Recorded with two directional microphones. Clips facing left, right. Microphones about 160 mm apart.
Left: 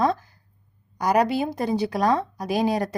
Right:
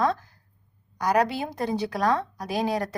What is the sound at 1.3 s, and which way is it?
Speech, 15° left (ahead or behind).